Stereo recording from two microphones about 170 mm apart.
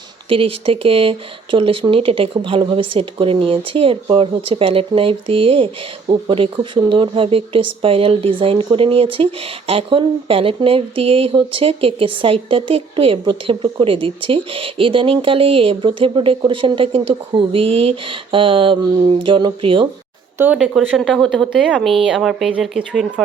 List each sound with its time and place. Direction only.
0.3 s speech: 35° right (ahead or behind)
20.4 s speech: 5° right (ahead or behind)